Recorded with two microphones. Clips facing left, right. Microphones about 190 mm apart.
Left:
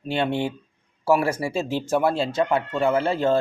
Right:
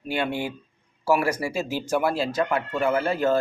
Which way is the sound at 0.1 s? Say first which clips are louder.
Left 3 dB; 25° left (ahead or behind).